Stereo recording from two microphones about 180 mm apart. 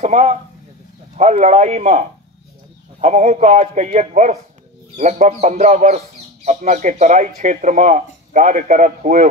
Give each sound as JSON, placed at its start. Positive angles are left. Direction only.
{"t": 0.0, "sound": "speech", "side_deg": -40}